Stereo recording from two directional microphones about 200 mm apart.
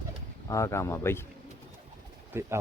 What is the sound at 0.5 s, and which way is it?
Speech, 15° left (ahead or behind).